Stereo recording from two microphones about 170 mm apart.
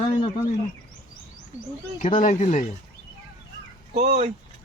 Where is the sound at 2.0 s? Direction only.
45° left (ahead or behind).